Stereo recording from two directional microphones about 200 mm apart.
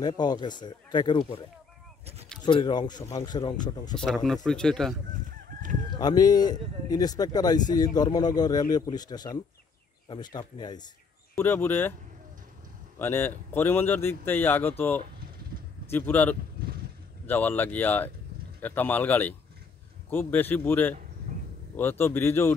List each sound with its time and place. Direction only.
0.0 s speech: 20° left (ahead or behind)
2.4 s speech: 25° left (ahead or behind)
3.9 s speech: 5° left (ahead or behind)
5.9 s speech: 20° left (ahead or behind)
13.0 s speech: 10° left (ahead or behind)